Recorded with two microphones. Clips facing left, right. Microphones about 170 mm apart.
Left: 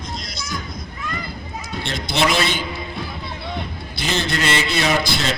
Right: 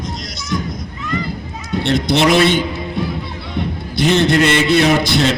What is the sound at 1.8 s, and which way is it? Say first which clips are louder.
Speech: right 7 dB; 60° right (ahead or behind).